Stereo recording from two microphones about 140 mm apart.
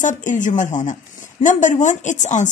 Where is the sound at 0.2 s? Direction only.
65° left (ahead or behind).